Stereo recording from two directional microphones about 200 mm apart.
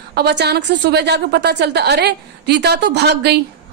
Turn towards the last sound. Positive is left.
turn(degrees=-55)  # may be behind; listen again after turning